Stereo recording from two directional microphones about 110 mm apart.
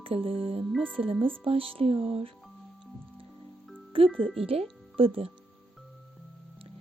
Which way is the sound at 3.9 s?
55° right (ahead or behind).